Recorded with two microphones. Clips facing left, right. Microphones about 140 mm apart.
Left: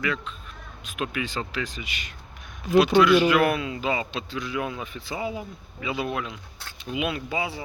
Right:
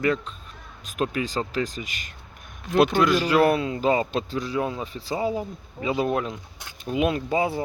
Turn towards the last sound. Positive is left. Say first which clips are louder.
# right 6 dB
turn(degrees=-45)  # may be behind; listen again after turning